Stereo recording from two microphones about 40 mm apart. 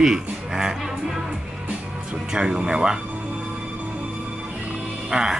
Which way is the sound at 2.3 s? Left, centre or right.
Right.